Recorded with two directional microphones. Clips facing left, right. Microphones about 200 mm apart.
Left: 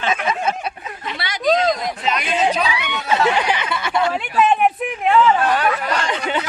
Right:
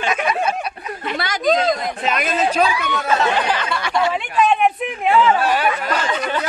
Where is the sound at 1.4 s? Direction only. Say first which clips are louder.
Left 1 dB; centre (ahead or behind).